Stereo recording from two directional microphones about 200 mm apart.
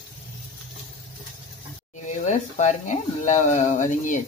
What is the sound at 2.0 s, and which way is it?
Speech, 35° left (ahead or behind).